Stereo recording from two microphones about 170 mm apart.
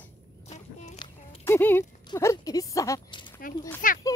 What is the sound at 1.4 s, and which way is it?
Speech, 15° left (ahead or behind).